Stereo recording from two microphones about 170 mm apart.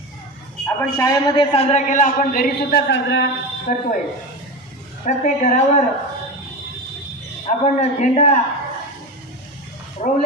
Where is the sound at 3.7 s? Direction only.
55° left (ahead or behind).